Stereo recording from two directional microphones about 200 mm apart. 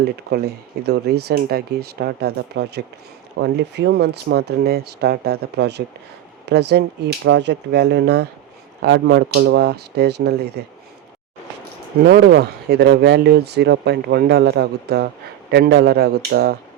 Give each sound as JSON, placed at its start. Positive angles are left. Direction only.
{"t": 0.0, "sound": "speech", "side_deg": -50}
{"t": 12.0, "sound": "speech", "side_deg": -55}